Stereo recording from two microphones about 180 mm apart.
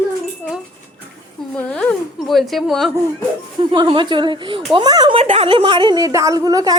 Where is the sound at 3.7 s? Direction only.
25° right (ahead or behind).